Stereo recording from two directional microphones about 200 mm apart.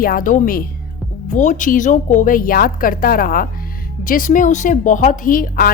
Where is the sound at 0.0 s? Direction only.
45° left (ahead or behind).